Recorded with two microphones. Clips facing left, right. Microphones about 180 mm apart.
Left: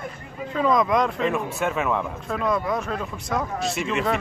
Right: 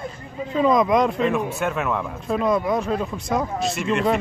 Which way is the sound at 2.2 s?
20° right (ahead or behind).